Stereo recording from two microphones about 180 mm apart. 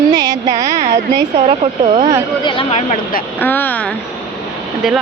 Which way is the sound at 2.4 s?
30° left (ahead or behind).